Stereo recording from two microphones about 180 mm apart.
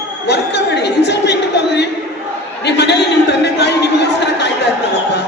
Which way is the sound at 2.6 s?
70° left (ahead or behind).